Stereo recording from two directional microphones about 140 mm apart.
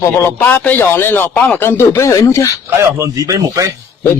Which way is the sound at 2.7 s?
25° right (ahead or behind).